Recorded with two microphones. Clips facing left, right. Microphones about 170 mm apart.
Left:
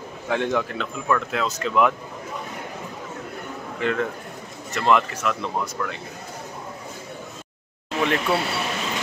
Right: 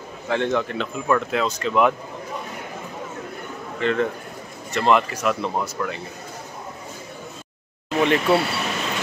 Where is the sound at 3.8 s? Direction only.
10° left (ahead or behind).